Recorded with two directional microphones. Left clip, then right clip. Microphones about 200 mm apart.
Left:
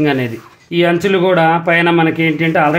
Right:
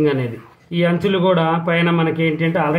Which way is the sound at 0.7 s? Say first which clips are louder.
Left 5 dB; 60° left (ahead or behind).